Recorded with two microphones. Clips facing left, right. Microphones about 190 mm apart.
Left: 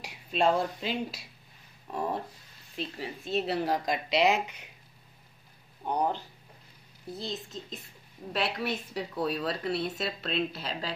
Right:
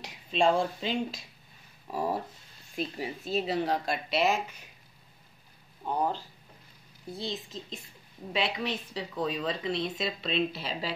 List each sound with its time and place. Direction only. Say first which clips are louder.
0.0 s speech: right 1 dB; 5° left (ahead or behind)
1.9 s speech: right 1 dB; 5° right (ahead or behind)
3.3 s speech: even; 5° left (ahead or behind)
5.9 s speech: left 1 dB; 20° left (ahead or behind)
7.1 s speech: right 1 dB; centre (ahead or behind)